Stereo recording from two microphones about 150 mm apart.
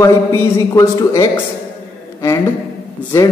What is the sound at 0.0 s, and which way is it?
A man's voice, 20° left (ahead or behind).